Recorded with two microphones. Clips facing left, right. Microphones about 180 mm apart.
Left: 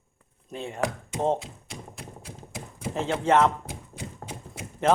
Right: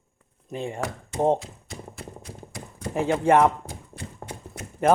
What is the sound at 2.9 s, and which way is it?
Speech, 10° right (ahead or behind).